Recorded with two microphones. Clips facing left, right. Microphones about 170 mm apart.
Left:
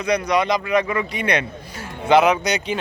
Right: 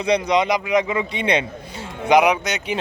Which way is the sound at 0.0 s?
25° right (ahead or behind).